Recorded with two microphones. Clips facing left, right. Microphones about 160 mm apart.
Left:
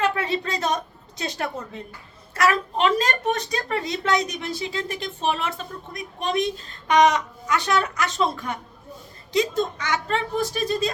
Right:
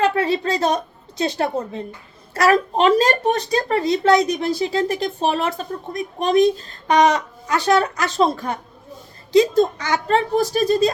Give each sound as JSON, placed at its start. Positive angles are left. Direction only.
{"t": 0.0, "sound": "a woman's voice", "side_deg": -35}